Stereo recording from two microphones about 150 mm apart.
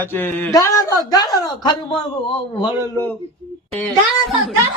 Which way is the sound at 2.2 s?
35° left (ahead or behind).